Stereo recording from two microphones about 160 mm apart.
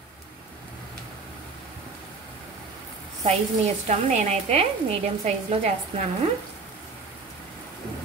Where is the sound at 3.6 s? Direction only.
45° right (ahead or behind).